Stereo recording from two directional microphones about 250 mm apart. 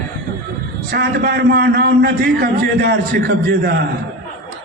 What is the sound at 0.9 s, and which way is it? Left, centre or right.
A man's voice, right.